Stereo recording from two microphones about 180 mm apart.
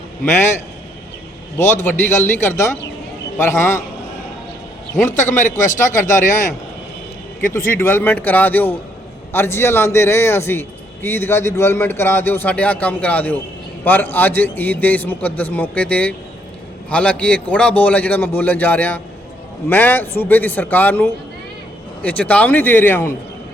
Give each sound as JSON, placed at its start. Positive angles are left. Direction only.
{"t": 1.5, "sound": "a man's voice", "side_deg": 15}
{"t": 5.1, "sound": "a man's voice", "side_deg": 45}
{"t": 7.8, "sound": "a man's voice", "side_deg": 10}